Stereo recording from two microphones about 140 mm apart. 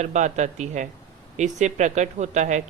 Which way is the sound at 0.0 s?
55° right (ahead or behind).